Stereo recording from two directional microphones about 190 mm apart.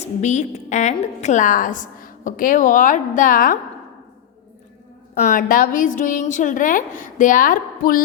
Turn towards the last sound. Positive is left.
turn(degrees=45)  # may be behind; listen again after turning